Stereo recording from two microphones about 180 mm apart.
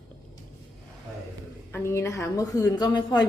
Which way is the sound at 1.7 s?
15° left (ahead or behind).